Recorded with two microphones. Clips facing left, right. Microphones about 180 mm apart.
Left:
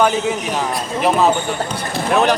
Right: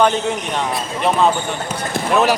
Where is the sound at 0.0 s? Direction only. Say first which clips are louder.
Even; 5° left (ahead or behind).